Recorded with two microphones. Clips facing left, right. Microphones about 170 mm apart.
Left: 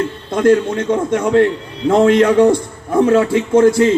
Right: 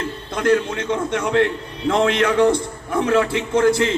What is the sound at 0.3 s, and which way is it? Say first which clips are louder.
A man's voice: left 6 dB; 45° left (ahead or behind).